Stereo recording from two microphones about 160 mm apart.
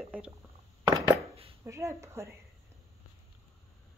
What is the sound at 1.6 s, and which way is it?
Speech, 15° right (ahead or behind).